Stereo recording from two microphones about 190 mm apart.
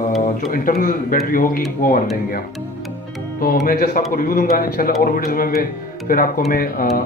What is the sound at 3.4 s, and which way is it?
Speech, 50° left (ahead or behind).